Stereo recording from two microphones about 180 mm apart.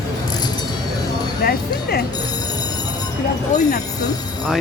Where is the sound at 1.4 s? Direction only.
55° left (ahead or behind).